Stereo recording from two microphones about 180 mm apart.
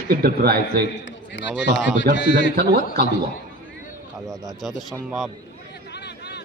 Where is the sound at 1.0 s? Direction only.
90° left.